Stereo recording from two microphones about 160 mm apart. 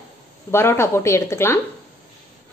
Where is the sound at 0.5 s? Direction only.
15° left (ahead or behind).